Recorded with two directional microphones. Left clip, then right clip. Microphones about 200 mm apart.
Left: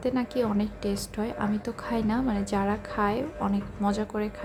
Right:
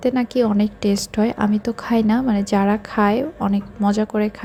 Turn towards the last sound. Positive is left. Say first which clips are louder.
# right 9 dB
turn(degrees=-30)  # may be behind; listen again after turning